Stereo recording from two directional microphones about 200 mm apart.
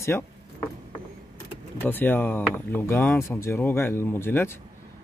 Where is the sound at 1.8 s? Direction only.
10° left (ahead or behind).